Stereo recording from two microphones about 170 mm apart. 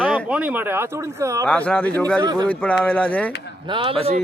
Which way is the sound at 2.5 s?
10° left (ahead or behind).